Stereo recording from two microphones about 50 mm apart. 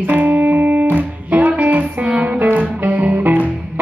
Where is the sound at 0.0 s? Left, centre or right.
Right.